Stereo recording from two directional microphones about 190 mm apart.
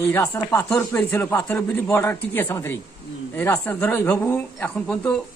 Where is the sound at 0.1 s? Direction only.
10° left (ahead or behind).